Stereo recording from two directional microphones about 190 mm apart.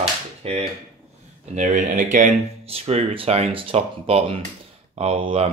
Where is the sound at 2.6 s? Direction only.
30° right (ahead or behind).